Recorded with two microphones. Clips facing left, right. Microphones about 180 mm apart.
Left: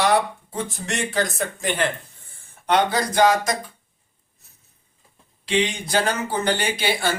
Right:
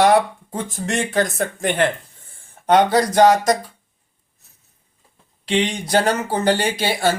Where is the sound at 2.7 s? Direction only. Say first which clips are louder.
Right 5 dB; 40° right (ahead or behind).